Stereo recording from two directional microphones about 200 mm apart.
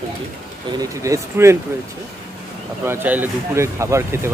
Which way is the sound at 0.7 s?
15° right (ahead or behind).